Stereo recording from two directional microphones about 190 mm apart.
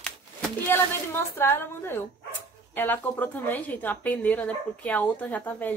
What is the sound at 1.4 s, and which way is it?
A woman's voice, 10° left (ahead or behind).